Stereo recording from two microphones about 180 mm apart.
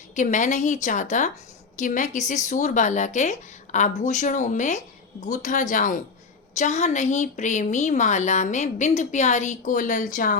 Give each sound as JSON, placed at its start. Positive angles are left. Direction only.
{"t": 0.2, "sound": "a woman's voice", "side_deg": 45}